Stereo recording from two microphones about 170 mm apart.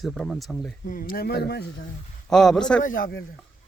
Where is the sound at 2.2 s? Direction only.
5° left (ahead or behind).